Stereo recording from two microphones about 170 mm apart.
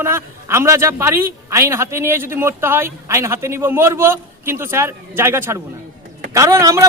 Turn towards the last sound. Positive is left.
turn(degrees=-20)  # may be behind; listen again after turning